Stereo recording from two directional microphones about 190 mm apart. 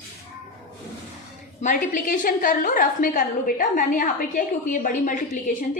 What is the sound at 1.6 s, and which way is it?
A woman's voice, 45° left (ahead or behind).